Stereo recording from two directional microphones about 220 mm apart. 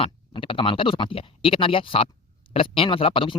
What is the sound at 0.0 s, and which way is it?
Speech, 25° left (ahead or behind).